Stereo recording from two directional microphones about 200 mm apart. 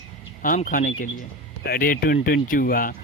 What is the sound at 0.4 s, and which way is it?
Speech, 45° left (ahead or behind).